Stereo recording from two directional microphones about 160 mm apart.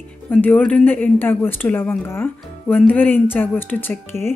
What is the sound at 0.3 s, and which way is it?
Speech, 10° left (ahead or behind).